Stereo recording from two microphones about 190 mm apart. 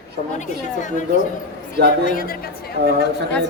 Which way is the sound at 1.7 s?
60° right (ahead or behind).